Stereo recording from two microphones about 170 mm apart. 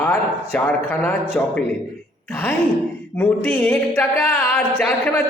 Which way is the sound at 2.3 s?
10° left (ahead or behind).